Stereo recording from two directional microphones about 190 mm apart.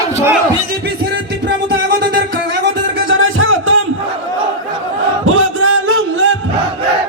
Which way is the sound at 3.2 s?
90° right.